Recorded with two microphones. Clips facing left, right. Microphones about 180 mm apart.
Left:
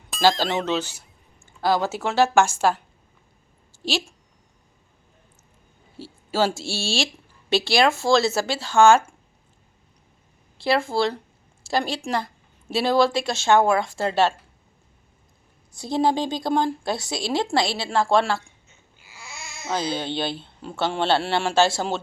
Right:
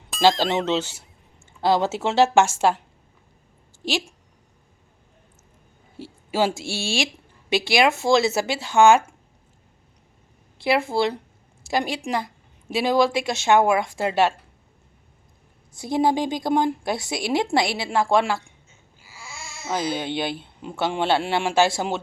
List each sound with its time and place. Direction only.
0.2 s speech: 20° right (ahead or behind)
6.6 s a woman's voice: 15° right (ahead or behind)
10.6 s a woman's voice: 20° right (ahead or behind)
15.8 s a woman's voice: 15° right (ahead or behind)
19.9 s a woman's voice: 15° right (ahead or behind)